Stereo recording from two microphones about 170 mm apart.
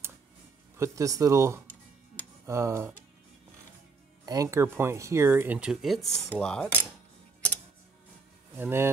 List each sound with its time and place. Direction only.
0.7 s speech: 20° right (ahead or behind)
4.3 s speech: 20° right (ahead or behind); by 6.9 s 5° left (ahead or behind)
8.5 s speech: 15° right (ahead or behind)